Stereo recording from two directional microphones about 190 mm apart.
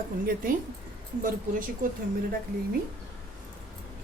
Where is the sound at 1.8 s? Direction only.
45° right (ahead or behind).